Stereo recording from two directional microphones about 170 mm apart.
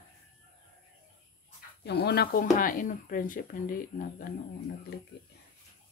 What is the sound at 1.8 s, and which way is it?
Speech, 70° left (ahead or behind).